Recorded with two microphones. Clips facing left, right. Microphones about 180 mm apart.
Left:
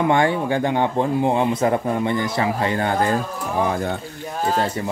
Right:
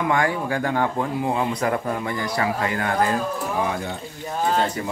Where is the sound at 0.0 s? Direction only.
25° left (ahead or behind).